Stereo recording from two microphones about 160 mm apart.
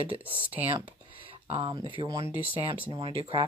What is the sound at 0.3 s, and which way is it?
Speech, 10° right (ahead or behind).